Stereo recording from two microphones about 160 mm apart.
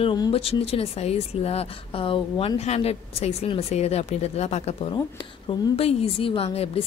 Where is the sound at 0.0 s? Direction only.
30° left (ahead or behind).